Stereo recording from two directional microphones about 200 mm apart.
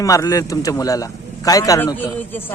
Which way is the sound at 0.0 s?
15° left (ahead or behind).